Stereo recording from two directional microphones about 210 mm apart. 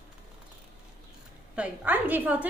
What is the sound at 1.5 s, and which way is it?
Speech, 5° right (ahead or behind).